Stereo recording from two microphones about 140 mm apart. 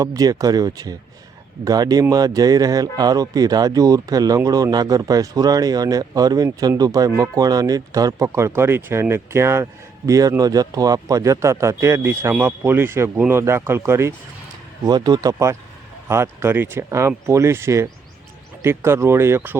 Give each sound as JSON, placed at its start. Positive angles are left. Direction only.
{"t": 0.0, "sound": "speech", "side_deg": -25}
{"t": 14.8, "sound": "speech", "side_deg": -30}